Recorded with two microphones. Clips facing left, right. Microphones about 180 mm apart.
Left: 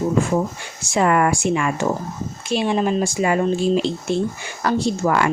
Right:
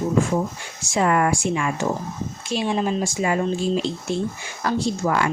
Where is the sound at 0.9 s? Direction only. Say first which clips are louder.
Left 2 dB; 65° left (ahead or behind).